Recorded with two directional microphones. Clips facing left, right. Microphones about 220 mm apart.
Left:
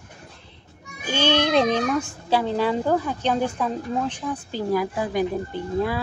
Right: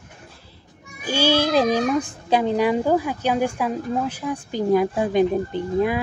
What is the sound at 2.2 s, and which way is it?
Speech, 15° right (ahead or behind).